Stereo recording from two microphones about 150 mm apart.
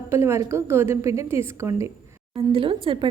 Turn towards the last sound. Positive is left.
turn(degrees=-35)  # may be behind; listen again after turning